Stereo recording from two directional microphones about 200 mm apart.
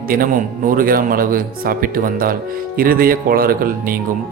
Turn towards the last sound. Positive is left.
turn(degrees=-45)  # may be behind; listen again after turning